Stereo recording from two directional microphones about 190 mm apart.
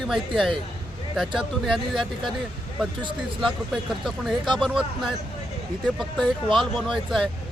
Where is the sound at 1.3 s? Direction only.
Centre (ahead or behind).